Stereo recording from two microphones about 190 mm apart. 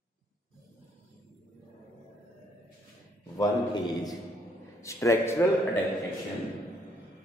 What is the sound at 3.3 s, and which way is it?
A man's voice, 20° left (ahead or behind).